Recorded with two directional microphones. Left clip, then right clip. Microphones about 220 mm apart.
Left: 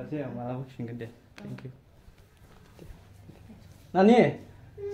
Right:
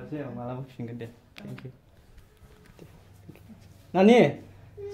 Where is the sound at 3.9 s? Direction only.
20° right (ahead or behind).